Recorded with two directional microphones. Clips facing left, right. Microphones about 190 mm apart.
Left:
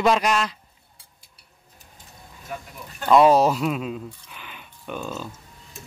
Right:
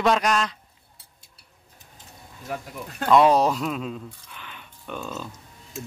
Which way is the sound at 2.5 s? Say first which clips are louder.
Right 3 dB; 70° right (ahead or behind).